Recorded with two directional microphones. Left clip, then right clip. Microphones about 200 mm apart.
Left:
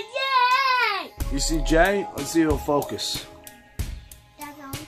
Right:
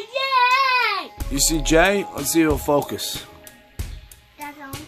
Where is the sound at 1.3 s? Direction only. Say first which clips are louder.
Right 3 dB; 40° right (ahead or behind).